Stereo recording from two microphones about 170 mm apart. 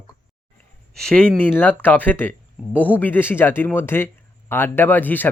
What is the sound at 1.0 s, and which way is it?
Speech, 5° left (ahead or behind).